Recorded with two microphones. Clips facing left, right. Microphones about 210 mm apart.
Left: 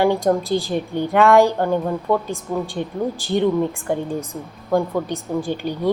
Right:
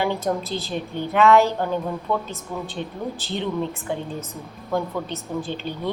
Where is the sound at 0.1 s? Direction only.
15° left (ahead or behind).